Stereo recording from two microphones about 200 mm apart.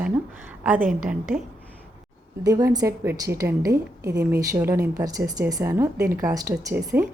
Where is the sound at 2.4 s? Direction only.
15° right (ahead or behind).